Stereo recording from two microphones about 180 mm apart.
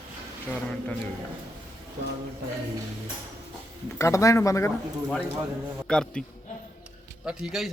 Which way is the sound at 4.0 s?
15° left (ahead or behind).